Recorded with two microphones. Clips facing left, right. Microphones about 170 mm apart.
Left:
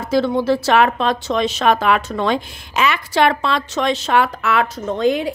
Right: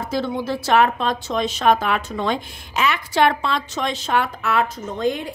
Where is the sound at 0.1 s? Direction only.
80° left.